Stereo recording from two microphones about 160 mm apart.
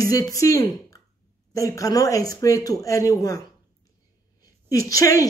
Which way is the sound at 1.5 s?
20° left (ahead or behind).